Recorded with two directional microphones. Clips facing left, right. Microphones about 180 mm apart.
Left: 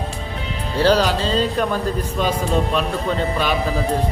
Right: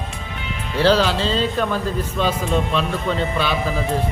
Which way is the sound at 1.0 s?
40° left (ahead or behind).